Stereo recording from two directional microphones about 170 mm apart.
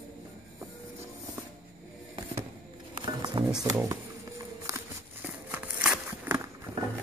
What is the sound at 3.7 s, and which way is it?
Speech, 15° right (ahead or behind).